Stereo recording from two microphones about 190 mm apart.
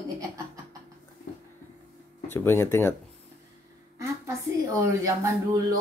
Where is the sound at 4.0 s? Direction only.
15° right (ahead or behind).